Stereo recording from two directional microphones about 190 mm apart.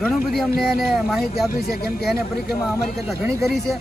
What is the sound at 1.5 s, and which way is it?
Speech, 55° left (ahead or behind).